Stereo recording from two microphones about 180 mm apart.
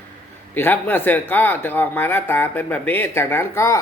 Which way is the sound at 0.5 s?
10° left (ahead or behind).